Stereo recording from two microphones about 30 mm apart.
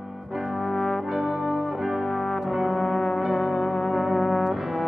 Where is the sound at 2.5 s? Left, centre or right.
Centre.